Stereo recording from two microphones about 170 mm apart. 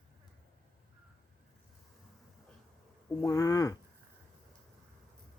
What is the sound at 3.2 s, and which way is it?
Speech, 20° left (ahead or behind).